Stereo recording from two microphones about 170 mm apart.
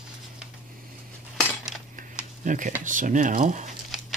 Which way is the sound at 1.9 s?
50° right (ahead or behind).